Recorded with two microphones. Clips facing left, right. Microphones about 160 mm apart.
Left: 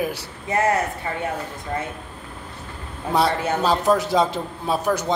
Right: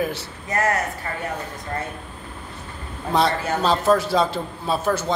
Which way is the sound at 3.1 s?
10° left (ahead or behind).